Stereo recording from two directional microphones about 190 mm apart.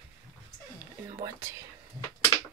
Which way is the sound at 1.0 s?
20° right (ahead or behind).